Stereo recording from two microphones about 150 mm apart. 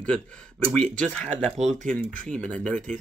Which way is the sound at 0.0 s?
5° left (ahead or behind).